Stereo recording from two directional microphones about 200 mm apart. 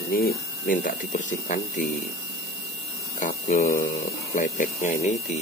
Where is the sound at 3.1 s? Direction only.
40° left (ahead or behind).